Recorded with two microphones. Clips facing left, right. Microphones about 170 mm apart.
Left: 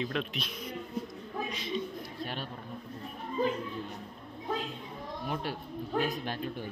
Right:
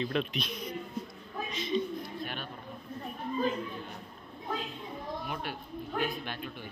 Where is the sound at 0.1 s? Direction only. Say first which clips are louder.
Right 3 dB; centre (ahead or behind).